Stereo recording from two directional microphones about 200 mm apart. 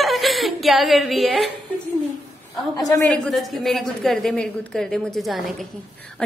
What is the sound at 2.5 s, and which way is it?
Speech, 15° left (ahead or behind).